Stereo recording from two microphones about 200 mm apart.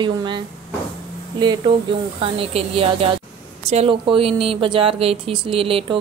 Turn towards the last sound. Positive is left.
turn(degrees=-25)  # may be behind; listen again after turning